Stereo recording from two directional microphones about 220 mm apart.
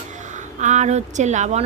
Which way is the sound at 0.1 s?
35° right (ahead or behind).